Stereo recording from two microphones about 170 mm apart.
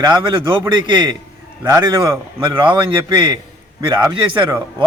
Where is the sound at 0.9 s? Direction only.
30° right (ahead or behind).